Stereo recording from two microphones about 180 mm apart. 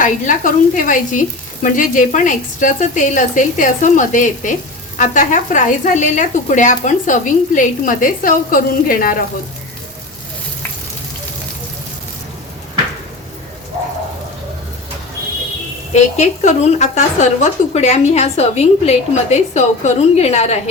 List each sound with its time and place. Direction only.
0.0 s speech: 45° left (ahead or behind)
16.0 s a woman's voice: 40° left (ahead or behind)